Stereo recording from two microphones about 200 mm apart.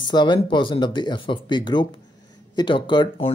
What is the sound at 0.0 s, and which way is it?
Speech, 20° left (ahead or behind).